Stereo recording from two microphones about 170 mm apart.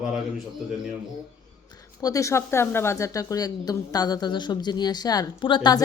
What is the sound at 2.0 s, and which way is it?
A woman's voice, 20° left (ahead or behind).